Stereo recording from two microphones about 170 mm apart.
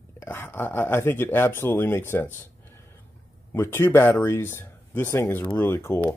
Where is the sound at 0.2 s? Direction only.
15° left (ahead or behind).